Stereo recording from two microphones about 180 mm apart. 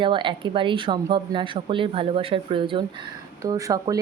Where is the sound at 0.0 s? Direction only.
25° right (ahead or behind).